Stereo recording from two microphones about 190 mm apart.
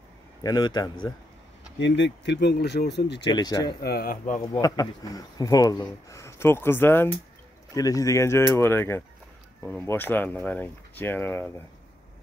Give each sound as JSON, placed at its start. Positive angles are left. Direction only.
{"t": 0.4, "sound": "a man's voice", "side_deg": 20}
{"t": 1.8, "sound": "speech", "side_deg": 70}
{"t": 3.3, "sound": "a man's voice", "side_deg": 20}
{"t": 3.8, "sound": "speech", "side_deg": 50}
{"t": 4.5, "sound": "speech", "side_deg": 20}